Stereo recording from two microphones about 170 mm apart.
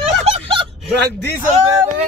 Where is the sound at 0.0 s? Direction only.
35° right (ahead or behind).